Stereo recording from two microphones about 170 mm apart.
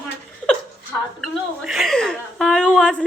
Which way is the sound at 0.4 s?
5° left (ahead or behind).